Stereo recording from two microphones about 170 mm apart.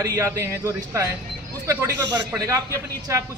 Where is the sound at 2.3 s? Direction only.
15° right (ahead or behind).